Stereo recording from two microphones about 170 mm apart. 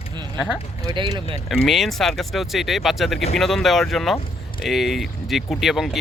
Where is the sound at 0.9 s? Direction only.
25° right (ahead or behind).